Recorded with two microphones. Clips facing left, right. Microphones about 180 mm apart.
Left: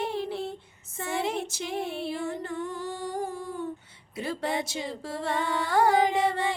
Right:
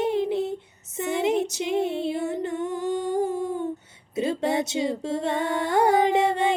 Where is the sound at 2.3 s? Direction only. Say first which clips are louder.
Right 6 dB; 20° right (ahead or behind).